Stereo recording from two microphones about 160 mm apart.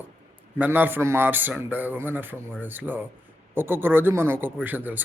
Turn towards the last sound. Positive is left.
turn(degrees=-10)  # may be behind; listen again after turning